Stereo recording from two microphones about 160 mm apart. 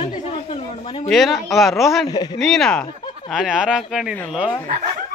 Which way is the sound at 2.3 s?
5° left (ahead or behind).